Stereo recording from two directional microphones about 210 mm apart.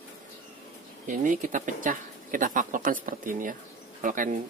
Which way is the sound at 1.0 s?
40° right (ahead or behind).